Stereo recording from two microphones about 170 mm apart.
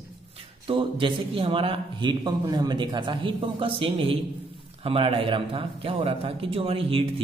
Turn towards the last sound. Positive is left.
turn(degrees=-35)  # may be behind; listen again after turning